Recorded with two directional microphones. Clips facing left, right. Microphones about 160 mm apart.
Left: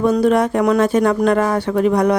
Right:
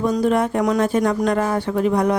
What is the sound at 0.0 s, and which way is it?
Speech, 70° left (ahead or behind).